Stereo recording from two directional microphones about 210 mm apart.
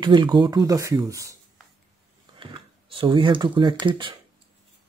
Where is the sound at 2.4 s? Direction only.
25° right (ahead or behind).